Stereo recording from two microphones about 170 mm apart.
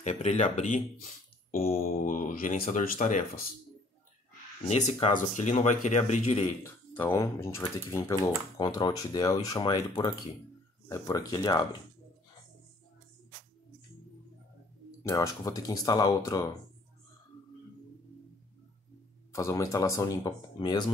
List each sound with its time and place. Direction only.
0.0 s speech: 40° left (ahead or behind)
4.6 s speech: 40° left (ahead or behind)
6.6 s speech: 15° left (ahead or behind)
15.0 s speech: 20° left (ahead or behind)
19.3 s speech: 20° left (ahead or behind)